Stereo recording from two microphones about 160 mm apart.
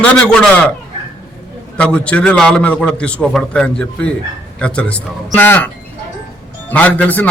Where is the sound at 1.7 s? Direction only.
5° left (ahead or behind).